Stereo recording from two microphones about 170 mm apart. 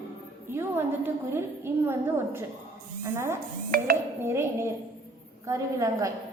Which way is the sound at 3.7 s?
60° right (ahead or behind).